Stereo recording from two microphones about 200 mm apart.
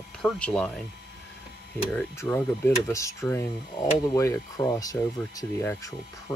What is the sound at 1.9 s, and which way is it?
Speech, 10° left (ahead or behind).